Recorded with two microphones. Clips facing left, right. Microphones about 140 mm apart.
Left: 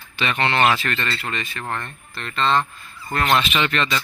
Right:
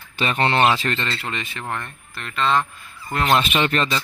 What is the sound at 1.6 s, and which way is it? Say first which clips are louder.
Speech: even; 5° right (ahead or behind).